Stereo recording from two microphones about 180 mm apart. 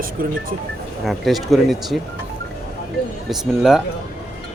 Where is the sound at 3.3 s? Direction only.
Centre (ahead or behind).